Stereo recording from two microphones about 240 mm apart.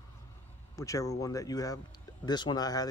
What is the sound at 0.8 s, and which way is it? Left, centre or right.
Speech, centre.